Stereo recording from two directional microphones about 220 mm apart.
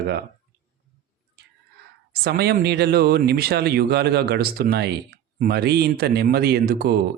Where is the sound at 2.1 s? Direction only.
45° right (ahead or behind).